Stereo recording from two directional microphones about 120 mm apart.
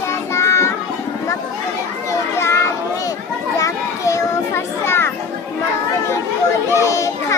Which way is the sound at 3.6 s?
25° left (ahead or behind).